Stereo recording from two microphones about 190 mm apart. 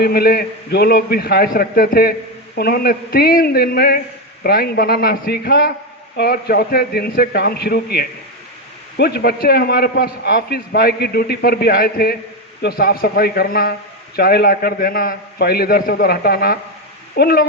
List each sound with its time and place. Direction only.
0.0 s a man's voice: 55° left (ahead or behind)